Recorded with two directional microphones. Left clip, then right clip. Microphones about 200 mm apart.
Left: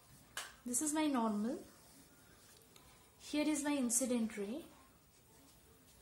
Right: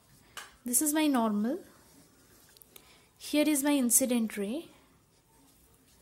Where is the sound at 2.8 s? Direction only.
40° right (ahead or behind).